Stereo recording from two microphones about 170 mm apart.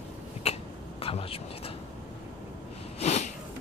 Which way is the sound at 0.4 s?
35° left (ahead or behind).